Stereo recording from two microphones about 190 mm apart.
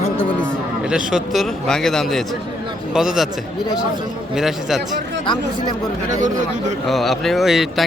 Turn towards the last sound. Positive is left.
turn(degrees=0)  # may be behind; listen again after turning